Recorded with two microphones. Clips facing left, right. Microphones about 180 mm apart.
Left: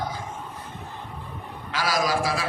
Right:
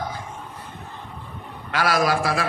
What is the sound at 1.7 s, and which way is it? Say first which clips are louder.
Speech: right 4 dB; 60° right (ahead or behind).